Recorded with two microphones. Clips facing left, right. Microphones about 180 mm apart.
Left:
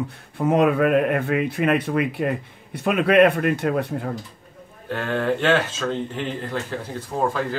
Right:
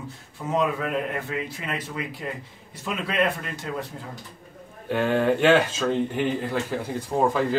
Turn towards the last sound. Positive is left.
turn(degrees=-10)  # may be behind; listen again after turning